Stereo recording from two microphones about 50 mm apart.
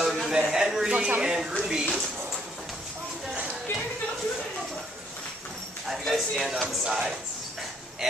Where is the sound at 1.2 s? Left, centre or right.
Centre.